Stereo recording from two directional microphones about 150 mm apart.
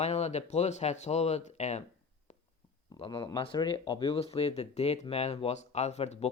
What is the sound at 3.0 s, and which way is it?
Speech, 35° left (ahead or behind).